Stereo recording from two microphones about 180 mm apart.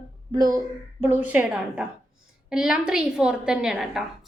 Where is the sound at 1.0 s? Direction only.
10° right (ahead or behind).